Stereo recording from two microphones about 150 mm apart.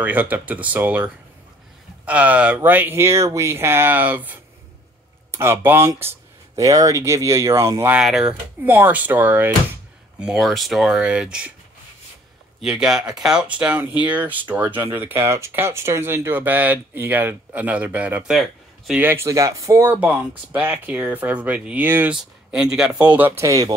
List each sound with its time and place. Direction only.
0.0 s speech: 10° right (ahead or behind)
7.9 s speech: 5° right (ahead or behind)
12.6 s speech: 5° right (ahead or behind); by 23.7 s 20° right (ahead or behind)